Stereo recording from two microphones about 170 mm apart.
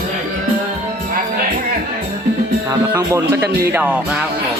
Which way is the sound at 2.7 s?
20° right (ahead or behind).